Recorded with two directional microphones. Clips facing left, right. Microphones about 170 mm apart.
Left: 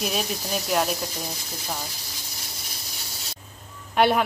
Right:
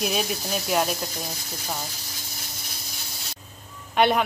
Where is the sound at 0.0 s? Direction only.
Centre (ahead or behind).